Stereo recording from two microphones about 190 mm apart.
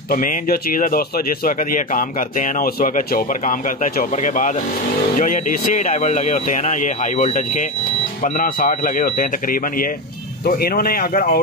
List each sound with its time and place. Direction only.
0.1 s a man's voice: 45° left (ahead or behind)